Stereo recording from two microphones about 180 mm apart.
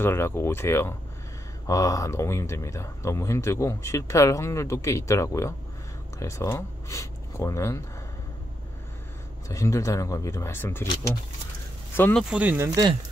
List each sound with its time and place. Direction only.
0.0 s speech: 15° left (ahead or behind)
9.5 s speech: 20° left (ahead or behind)
11.9 s speech: 10° left (ahead or behind)
12.3 s speech: 10° right (ahead or behind)